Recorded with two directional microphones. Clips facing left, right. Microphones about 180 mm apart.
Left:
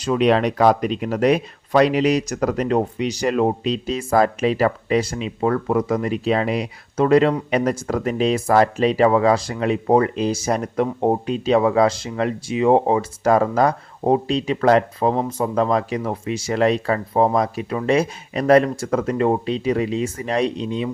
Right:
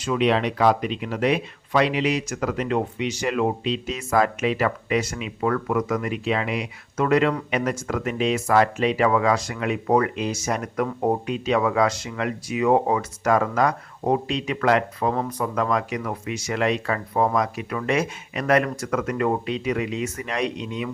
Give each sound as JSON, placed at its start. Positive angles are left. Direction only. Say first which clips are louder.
{"t": 0.0, "sound": "speech", "louder": "left 4 dB", "side_deg": 40}